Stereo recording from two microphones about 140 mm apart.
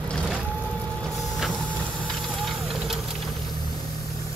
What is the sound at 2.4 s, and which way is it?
Vehicle, centre (ahead or behind).